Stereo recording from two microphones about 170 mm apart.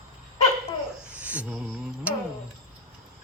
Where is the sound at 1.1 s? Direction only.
10° right (ahead or behind).